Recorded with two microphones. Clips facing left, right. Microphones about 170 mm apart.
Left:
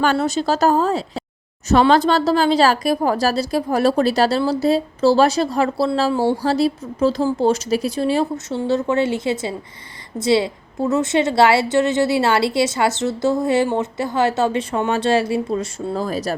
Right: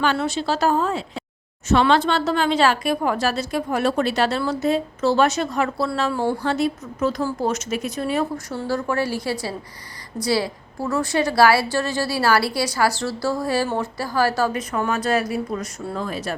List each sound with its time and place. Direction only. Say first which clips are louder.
0.0 s a woman's voice: left 4 dB; 45° left (ahead or behind)